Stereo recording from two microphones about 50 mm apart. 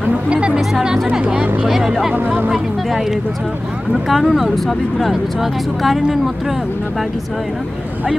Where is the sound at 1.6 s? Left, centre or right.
Centre.